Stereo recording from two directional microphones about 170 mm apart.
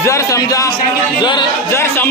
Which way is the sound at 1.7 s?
15° left (ahead or behind).